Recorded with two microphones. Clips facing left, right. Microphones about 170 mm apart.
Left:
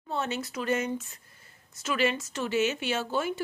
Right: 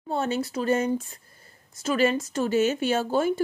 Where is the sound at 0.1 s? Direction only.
35° right (ahead or behind).